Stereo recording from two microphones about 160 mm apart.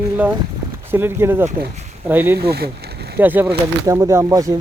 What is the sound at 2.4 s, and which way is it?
Speech, 75° right (ahead or behind).